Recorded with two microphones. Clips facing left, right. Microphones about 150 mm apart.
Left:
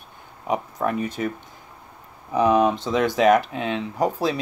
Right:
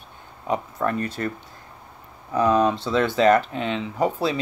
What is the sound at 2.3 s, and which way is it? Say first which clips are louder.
Speech: left 1 dB; 15° left (ahead or behind).